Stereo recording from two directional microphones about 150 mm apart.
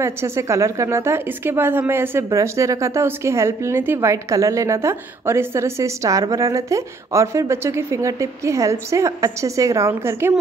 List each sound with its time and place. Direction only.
0.0 s a woman's voice: 20° right (ahead or behind)